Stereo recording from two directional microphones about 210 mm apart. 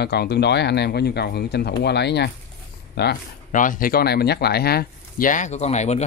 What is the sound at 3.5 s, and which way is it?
Speech, 40° left (ahead or behind).